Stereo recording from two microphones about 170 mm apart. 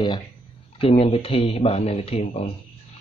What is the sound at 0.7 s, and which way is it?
Speech, 35° left (ahead or behind).